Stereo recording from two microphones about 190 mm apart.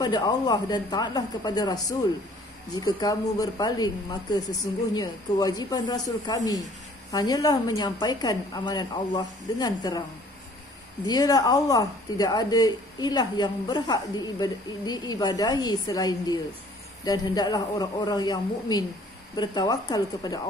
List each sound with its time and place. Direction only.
0.0 s speech: 20° left (ahead or behind)
11.1 s speech: 20° left (ahead or behind)